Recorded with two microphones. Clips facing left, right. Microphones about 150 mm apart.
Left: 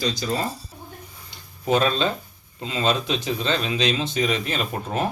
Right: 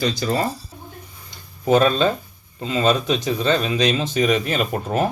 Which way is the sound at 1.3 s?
45° right (ahead or behind).